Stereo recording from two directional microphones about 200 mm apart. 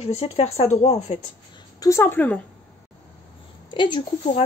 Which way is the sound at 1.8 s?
15° left (ahead or behind).